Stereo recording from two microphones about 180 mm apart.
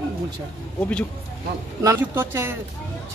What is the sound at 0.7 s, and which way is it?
Speech, 5° left (ahead or behind).